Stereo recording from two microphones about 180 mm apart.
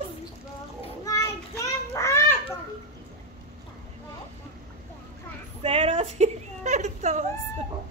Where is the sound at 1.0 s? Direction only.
15° left (ahead or behind).